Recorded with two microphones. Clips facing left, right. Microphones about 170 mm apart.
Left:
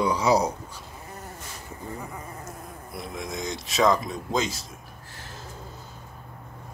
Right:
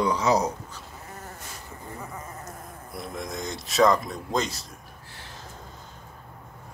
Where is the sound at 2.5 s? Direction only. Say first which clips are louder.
Left 1 dB; centre (ahead or behind).